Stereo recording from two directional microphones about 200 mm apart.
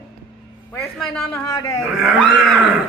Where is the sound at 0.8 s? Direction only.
Centre (ahead or behind).